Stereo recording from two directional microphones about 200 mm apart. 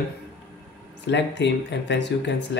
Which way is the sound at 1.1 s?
60° left (ahead or behind).